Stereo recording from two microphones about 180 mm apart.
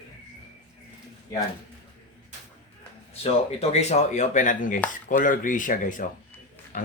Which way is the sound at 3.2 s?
35° left (ahead or behind).